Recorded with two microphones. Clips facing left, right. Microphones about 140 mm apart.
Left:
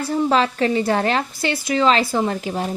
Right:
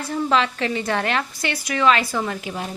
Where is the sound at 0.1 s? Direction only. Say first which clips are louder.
Left 2 dB; 35° left (ahead or behind).